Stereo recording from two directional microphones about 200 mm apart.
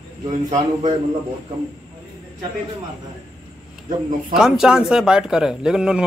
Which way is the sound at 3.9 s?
40° right (ahead or behind).